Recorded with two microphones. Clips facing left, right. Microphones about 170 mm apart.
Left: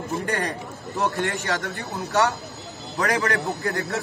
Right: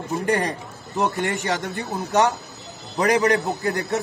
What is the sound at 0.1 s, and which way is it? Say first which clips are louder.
A man's voice: right 5 dB; 20° right (ahead or behind).